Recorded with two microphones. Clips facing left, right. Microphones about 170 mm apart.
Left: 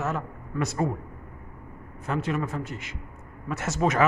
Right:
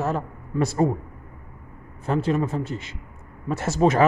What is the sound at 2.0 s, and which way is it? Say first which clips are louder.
A man's voice: right 5 dB; 30° right (ahead or behind).